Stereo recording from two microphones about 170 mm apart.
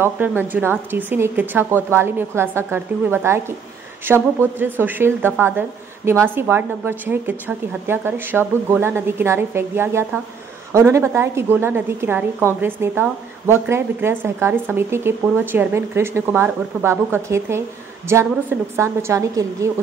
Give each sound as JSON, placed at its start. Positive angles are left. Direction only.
{"t": 0.0, "sound": "a woman's voice", "side_deg": -15}